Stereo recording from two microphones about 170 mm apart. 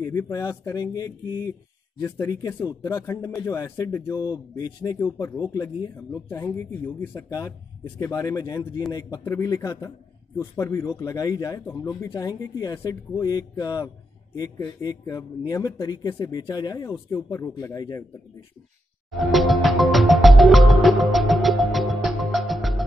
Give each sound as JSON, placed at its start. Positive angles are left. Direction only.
{"t": 0.0, "sound": "speech", "side_deg": 15}
{"t": 19.0, "sound": "music", "side_deg": 0}